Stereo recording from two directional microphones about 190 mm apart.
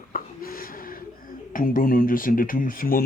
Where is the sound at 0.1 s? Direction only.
50° left (ahead or behind).